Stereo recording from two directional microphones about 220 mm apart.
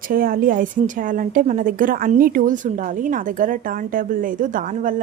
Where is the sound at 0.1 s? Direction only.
40° right (ahead or behind).